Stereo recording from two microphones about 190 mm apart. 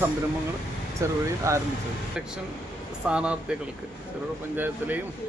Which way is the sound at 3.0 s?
5° right (ahead or behind).